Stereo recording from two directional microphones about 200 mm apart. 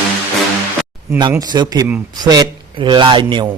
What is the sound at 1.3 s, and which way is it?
Mantra, 20° right (ahead or behind).